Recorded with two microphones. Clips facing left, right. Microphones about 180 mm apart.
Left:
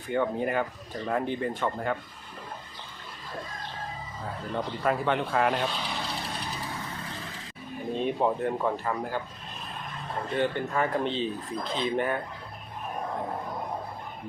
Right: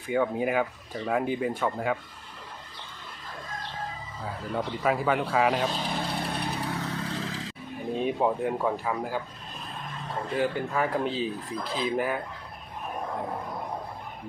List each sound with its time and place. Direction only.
0.1 s speech: 5° right (ahead or behind)
4.5 s speech: 5° right (ahead or behind)
5.6 s vehicle: 45° right (ahead or behind); by 7.5 s 90° right
7.9 s speech: 5° right (ahead or behind)
10.3 s speech: 5° right (ahead or behind)